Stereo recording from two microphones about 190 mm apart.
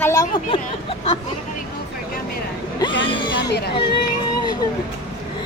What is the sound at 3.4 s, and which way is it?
Speech, 60° left (ahead or behind).